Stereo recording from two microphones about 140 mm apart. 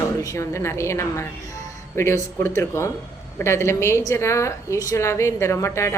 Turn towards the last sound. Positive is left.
turn(degrees=20)  # may be behind; listen again after turning